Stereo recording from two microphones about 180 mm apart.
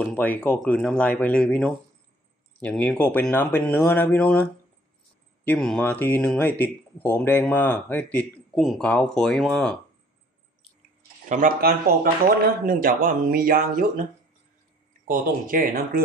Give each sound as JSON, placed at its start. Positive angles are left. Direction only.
{"t": 0.0, "sound": "speech", "side_deg": 10}
{"t": 11.2, "sound": "speech", "side_deg": -45}
{"t": 15.0, "sound": "speech", "side_deg": -50}